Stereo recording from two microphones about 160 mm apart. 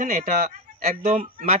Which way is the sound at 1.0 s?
45° right (ahead or behind).